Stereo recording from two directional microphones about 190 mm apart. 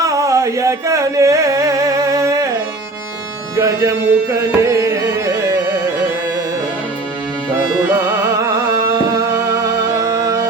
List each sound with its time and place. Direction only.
0.0 s music: 15° right (ahead or behind)
3.5 s music: 15° right (ahead or behind)
7.9 s music: 10° right (ahead or behind)